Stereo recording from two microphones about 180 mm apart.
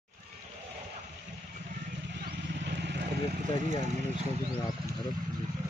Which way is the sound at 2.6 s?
70° right (ahead or behind).